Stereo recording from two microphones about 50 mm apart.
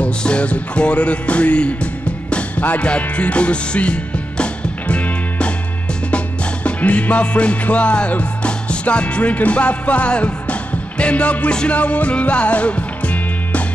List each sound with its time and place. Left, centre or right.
0.0 s music: left
6.1 s music: left